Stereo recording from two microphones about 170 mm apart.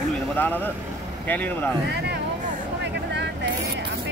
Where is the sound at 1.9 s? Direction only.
80° right.